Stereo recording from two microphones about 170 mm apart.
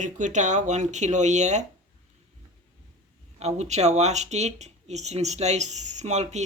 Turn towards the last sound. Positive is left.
turn(degrees=-40)  # may be behind; listen again after turning